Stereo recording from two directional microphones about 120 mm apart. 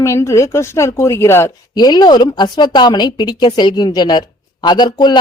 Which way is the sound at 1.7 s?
35° left (ahead or behind).